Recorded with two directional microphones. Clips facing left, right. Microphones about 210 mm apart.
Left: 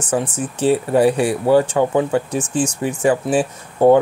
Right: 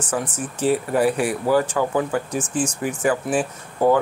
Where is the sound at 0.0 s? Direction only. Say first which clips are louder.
Left 5 dB; 30° left (ahead or behind).